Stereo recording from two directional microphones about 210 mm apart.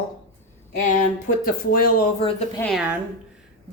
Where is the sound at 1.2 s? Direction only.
45° left (ahead or behind).